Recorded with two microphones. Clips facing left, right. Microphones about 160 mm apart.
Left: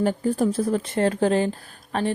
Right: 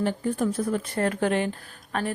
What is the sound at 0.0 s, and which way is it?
A woman's voice, 35° left (ahead or behind).